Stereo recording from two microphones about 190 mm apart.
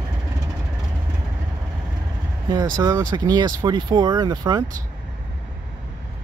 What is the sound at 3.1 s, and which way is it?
Speech, 20° right (ahead or behind).